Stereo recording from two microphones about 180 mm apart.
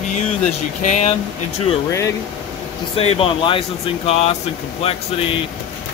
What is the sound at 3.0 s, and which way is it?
Speech, 30° left (ahead or behind).